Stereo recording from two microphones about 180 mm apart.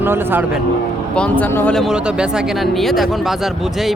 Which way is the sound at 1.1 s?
5° left (ahead or behind).